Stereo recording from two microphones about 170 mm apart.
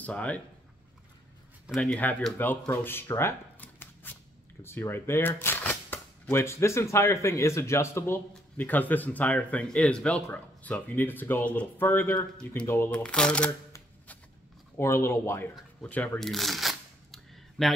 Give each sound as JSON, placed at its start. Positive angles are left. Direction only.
{"t": 0.0, "sound": "speech", "side_deg": 10}
{"t": 1.7, "sound": "speech", "side_deg": 5}
{"t": 2.6, "sound": "shuffling cards", "side_deg": 15}
{"t": 4.6, "sound": "speech", "side_deg": 15}
{"t": 14.8, "sound": "speech", "side_deg": 15}
{"t": 15.8, "sound": "shuffling cards", "side_deg": 10}